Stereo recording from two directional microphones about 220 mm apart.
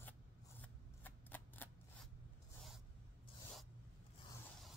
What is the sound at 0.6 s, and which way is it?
Scissors, 5° left (ahead or behind).